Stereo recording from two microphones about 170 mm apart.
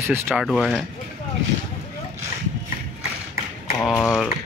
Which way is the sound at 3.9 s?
20° left (ahead or behind).